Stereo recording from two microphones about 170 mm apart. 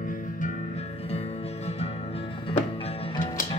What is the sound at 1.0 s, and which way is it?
Music, 40° left (ahead or behind).